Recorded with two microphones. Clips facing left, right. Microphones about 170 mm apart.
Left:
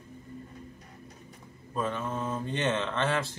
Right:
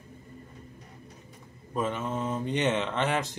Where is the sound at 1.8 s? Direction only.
20° right (ahead or behind).